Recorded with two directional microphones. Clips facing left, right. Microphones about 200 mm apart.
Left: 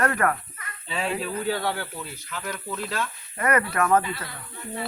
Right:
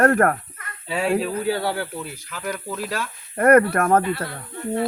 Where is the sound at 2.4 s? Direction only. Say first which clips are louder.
Right 5 dB; 10° right (ahead or behind).